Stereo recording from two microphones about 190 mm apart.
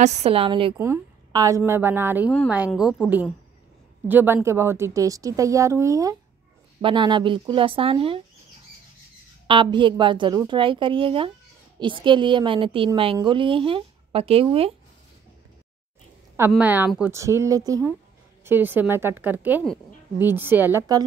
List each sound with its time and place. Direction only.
0.0 s a woman's voice: 35° right (ahead or behind)
0.7 s a woman's voice: 15° right (ahead or behind)
9.5 s a woman's voice: 25° right (ahead or behind)
16.3 s a woman's voice: 10° right (ahead or behind)